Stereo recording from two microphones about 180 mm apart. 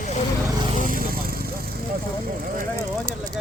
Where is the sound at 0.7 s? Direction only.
50° right (ahead or behind).